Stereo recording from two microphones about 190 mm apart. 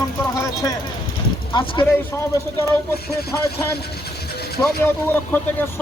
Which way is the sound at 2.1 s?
15° left (ahead or behind).